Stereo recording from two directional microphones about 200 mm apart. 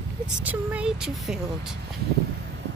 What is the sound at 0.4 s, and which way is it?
Speech, 5° right (ahead or behind).